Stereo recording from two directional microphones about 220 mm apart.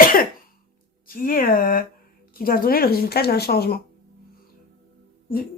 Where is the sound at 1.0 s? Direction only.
40° left (ahead or behind).